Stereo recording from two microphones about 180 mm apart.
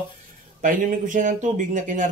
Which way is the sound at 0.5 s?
45° right (ahead or behind).